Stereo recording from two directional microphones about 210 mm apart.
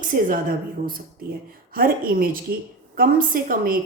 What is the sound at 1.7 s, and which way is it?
A woman's voice, 45° right (ahead or behind).